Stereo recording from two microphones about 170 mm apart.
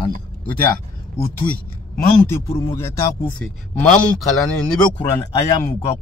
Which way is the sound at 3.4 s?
5° left (ahead or behind).